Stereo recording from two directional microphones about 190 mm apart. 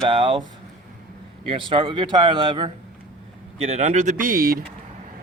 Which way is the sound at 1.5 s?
25° right (ahead or behind).